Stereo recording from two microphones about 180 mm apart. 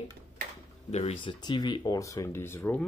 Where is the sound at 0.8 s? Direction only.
35° left (ahead or behind).